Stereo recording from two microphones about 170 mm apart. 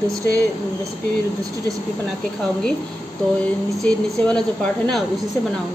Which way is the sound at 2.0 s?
5° left (ahead or behind).